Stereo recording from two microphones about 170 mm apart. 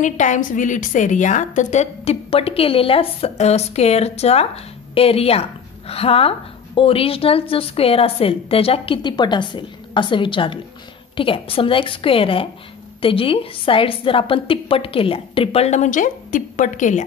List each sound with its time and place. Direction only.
0.0 s a woman's voice: 45° left (ahead or behind)